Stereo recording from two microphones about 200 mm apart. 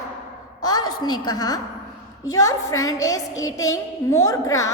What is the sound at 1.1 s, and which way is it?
A woman's voice, 20° left (ahead or behind).